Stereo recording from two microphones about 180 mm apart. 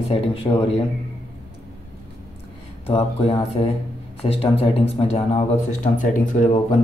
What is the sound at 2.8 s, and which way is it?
Speech, 35° left (ahead or behind).